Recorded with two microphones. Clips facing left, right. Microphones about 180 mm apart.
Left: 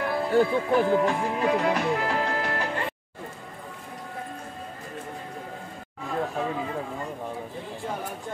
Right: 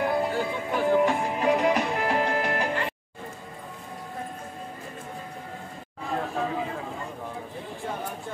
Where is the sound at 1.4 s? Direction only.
15° right (ahead or behind).